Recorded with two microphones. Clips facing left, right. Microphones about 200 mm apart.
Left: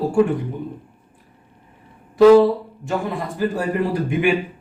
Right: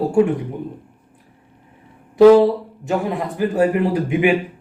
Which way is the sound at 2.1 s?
15° right (ahead or behind).